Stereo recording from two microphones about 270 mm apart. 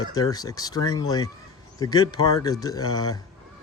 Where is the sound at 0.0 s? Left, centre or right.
Centre.